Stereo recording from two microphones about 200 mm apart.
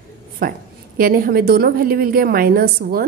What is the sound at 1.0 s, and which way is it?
A woman's voice, 45° right (ahead or behind).